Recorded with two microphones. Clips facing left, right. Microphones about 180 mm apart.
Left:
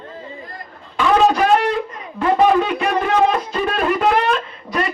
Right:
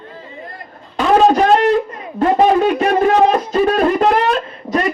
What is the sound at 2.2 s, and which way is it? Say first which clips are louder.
Music: right 2 dB; 40° right (ahead or behind).